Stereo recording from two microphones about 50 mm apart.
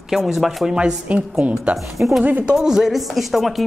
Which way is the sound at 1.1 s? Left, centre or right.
Right.